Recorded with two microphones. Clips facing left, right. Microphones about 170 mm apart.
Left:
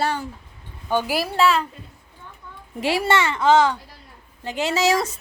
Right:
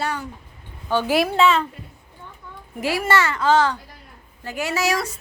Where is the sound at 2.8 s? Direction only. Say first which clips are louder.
Even; 25° left (ahead or behind).